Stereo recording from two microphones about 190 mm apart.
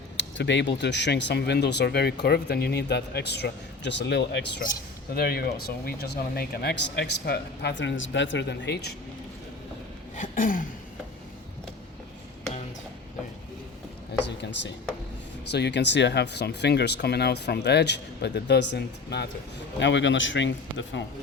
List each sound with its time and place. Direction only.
0.2 s speech: 70° left (ahead or behind)
5.1 s speech: 55° left (ahead or behind)
10.2 s throat clearing: 45° left (ahead or behind)
14.3 s speech: 70° left (ahead or behind)